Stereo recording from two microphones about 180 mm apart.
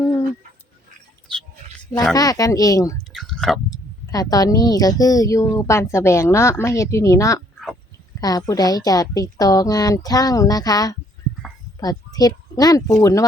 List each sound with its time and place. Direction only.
2.1 s speech: 20° left (ahead or behind)
3.1 s a sound: centre (ahead or behind)
3.7 s speech: 20° left (ahead or behind)